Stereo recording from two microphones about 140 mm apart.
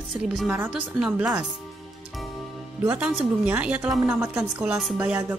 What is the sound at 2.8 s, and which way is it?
Speech, 10° right (ahead or behind).